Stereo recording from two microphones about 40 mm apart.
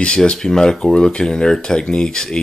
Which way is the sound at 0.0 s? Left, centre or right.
Centre.